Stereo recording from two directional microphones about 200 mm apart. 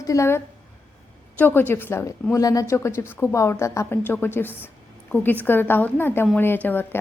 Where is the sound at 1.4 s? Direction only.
10° left (ahead or behind).